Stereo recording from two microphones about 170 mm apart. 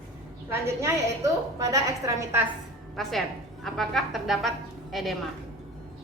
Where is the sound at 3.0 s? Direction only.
Centre (ahead or behind).